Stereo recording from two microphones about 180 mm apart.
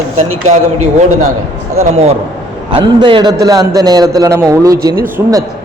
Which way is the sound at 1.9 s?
35° right (ahead or behind).